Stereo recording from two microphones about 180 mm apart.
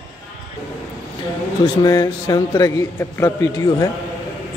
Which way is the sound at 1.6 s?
20° left (ahead or behind).